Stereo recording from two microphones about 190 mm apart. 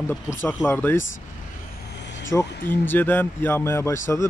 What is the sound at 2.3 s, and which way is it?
Speech, 15° left (ahead or behind).